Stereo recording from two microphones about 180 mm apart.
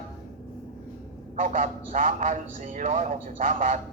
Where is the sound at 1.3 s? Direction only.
45° right (ahead or behind).